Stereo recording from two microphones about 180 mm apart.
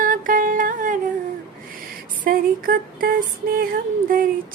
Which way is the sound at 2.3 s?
50° right (ahead or behind).